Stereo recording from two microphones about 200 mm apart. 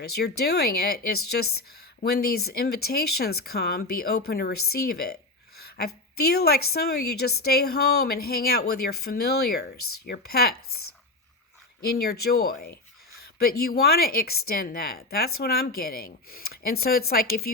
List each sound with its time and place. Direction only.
0.0 s a woman's voice: 50° left (ahead or behind)
11.9 s speech: 50° left (ahead or behind)